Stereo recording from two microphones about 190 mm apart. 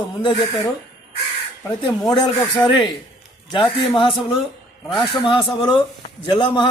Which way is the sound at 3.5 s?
25° left (ahead or behind).